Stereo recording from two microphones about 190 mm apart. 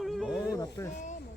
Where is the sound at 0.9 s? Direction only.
40° left (ahead or behind).